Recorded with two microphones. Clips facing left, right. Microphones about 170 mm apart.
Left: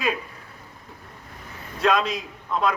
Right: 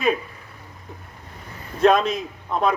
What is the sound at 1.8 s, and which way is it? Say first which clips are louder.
Speech: right 5 dB; 50° right (ahead or behind).